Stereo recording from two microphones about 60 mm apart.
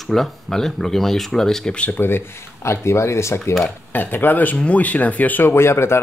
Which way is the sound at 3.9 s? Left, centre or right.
Left.